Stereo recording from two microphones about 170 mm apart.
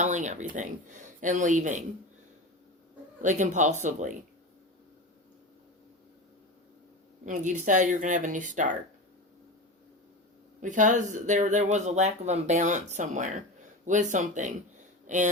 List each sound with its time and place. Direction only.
0.0 s speech: 45° right (ahead or behind)
3.2 s speech: 45° right (ahead or behind)
7.3 s speech: 45° right (ahead or behind)
10.6 s speech: 50° right (ahead or behind)